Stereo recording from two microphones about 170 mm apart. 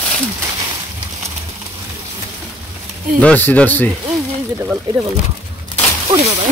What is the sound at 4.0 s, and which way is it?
Speech, 20° right (ahead or behind).